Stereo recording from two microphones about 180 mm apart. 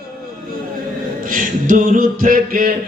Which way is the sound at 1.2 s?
50° right (ahead or behind).